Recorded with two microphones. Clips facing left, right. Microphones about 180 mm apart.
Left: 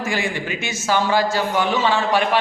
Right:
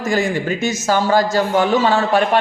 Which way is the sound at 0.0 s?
40° right (ahead or behind).